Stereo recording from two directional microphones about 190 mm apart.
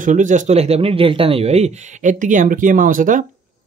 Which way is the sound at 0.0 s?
40° right (ahead or behind).